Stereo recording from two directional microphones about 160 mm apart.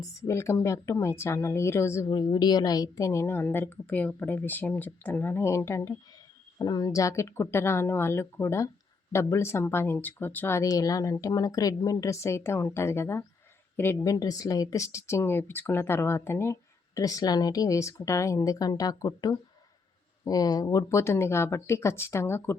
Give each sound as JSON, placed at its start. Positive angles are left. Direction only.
{"t": 0.2, "sound": "a woman's voice", "side_deg": 20}